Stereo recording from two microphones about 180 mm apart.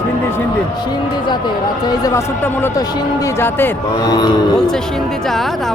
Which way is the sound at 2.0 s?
15° left (ahead or behind).